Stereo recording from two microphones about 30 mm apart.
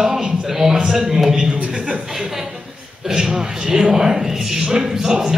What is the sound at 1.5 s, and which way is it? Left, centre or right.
Chuckle, right.